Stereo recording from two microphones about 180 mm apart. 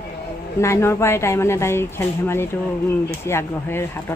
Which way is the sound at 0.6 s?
15° left (ahead or behind).